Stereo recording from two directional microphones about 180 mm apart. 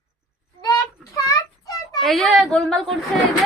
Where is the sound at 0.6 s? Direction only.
20° left (ahead or behind).